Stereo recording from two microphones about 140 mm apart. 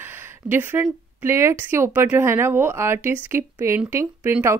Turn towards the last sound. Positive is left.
turn(degrees=-20)  # may be behind; listen again after turning